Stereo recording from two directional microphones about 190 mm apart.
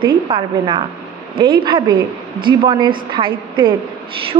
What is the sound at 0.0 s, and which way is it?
A woman's voice, 25° right (ahead or behind).